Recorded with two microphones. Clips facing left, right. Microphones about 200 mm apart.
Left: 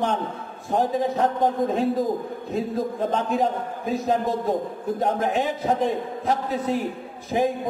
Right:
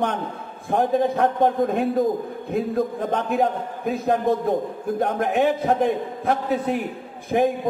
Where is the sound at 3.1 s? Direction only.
60° right (ahead or behind).